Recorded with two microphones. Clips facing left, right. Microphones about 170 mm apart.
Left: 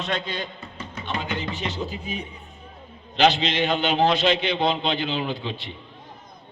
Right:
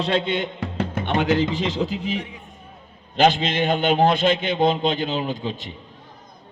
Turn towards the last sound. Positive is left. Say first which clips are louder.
# right 2 dB
turn(degrees=-45)  # may be behind; listen again after turning